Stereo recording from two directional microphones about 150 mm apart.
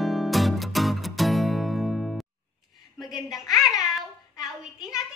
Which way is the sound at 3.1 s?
25° left (ahead or behind).